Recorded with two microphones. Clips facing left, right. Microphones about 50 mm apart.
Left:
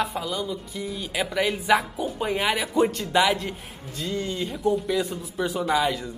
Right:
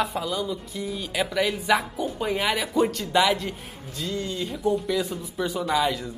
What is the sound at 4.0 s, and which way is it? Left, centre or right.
Speech, centre.